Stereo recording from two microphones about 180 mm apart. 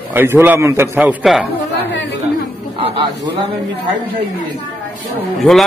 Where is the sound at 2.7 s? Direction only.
30° right (ahead or behind).